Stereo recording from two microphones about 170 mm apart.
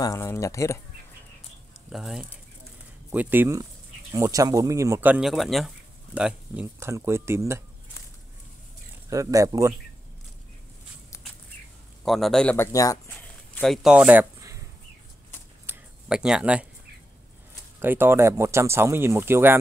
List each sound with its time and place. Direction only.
0.0 s speech: 15° left (ahead or behind)
1.9 s a man's voice: centre (ahead or behind)
9.1 s speech: 20° right (ahead or behind)
12.0 s a man's voice: centre (ahead or behind)
12.7 s speech: 20° left (ahead or behind)
13.6 s speech: centre (ahead or behind)
15.6 s a sound: 10° right (ahead or behind)
17.7 s speech: 15° right (ahead or behind)